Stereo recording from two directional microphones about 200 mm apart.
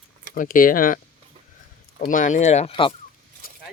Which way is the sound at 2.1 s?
40° left (ahead or behind).